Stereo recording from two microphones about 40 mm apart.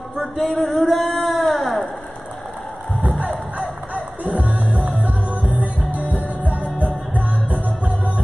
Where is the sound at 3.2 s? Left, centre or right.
Right.